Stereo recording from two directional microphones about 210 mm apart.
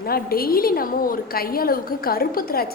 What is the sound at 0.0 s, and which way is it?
A woman's voice, 45° left (ahead or behind).